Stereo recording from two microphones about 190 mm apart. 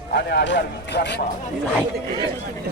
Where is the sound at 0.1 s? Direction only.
60° left (ahead or behind).